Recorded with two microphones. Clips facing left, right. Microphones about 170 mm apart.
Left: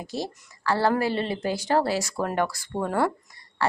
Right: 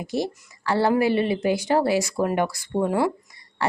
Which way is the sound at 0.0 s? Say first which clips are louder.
Right 5 dB; 15° right (ahead or behind).